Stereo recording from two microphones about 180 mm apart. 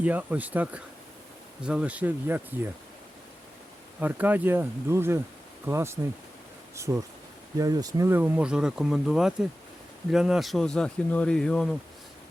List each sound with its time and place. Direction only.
0.0 s speech: 10° right (ahead or behind)
4.0 s speech: 10° right (ahead or behind)